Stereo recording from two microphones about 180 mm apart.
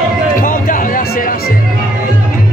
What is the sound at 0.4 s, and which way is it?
Music, 50° left (ahead or behind).